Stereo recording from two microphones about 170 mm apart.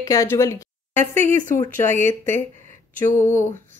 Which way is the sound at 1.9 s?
15° left (ahead or behind).